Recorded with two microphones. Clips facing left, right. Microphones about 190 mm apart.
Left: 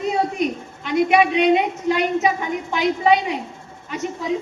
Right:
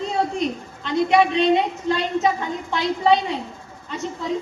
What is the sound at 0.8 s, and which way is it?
A woman's voice, 15° left (ahead or behind).